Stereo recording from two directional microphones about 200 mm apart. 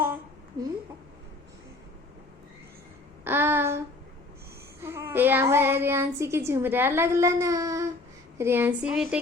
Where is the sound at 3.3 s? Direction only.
10° right (ahead or behind).